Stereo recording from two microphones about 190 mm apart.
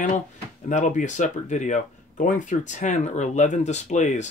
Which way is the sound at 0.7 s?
40° left (ahead or behind).